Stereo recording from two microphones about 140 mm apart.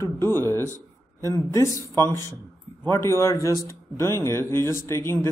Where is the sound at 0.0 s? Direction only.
15° left (ahead or behind).